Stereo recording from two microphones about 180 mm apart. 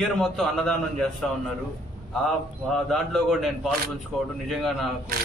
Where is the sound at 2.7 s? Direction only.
Centre (ahead or behind).